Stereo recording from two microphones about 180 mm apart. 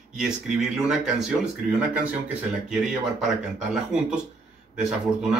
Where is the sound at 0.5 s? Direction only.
5° right (ahead or behind).